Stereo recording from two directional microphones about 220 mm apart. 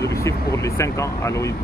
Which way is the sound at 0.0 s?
15° left (ahead or behind).